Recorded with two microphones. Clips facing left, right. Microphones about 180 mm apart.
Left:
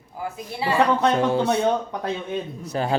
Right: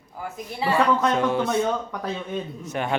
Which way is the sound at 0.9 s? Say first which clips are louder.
Left 2 dB; 30° left (ahead or behind).